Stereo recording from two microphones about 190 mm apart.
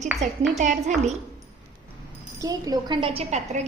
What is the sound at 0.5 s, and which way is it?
Speech, 40° right (ahead or behind).